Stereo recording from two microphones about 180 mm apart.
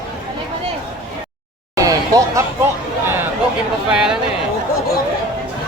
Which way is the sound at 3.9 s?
5° right (ahead or behind).